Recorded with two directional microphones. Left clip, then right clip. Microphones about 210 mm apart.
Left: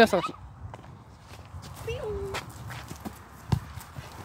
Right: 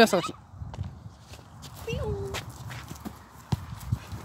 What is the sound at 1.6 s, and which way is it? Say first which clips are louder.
Dog: even; 35° right (ahead or behind).